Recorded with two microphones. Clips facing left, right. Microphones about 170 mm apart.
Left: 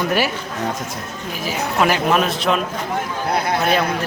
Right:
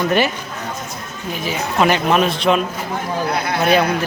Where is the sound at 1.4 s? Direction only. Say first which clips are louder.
Right 1 dB; 5° left (ahead or behind).